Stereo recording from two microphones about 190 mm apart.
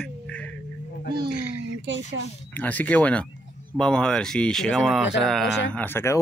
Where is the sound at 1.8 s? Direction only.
70° right (ahead or behind).